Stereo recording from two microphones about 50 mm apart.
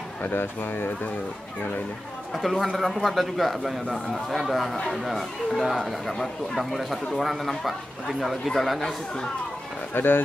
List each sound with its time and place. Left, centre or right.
0.2 s speech: left
2.3 s speech: centre
9.9 s speech: left